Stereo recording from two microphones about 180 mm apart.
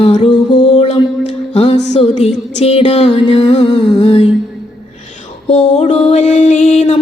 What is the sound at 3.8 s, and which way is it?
Humming, 25° left (ahead or behind).